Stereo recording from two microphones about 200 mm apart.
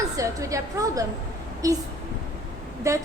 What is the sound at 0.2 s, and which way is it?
A woman's voice, 15° right (ahead or behind).